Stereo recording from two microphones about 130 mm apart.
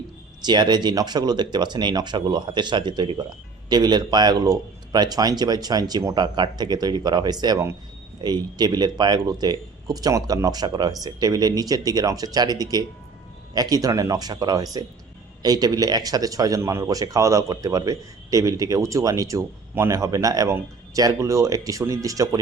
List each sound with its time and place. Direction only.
0.4 s speech: 35° right (ahead or behind)